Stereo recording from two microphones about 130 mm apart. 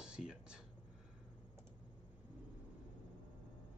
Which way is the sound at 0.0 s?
5° right (ahead or behind).